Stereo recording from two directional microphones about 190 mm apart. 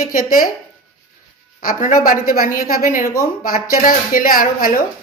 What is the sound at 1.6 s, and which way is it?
A woman's voice, 45° left (ahead or behind).